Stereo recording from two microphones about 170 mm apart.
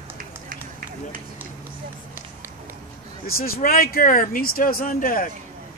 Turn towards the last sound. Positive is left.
turn(degrees=55)  # may be behind; listen again after turning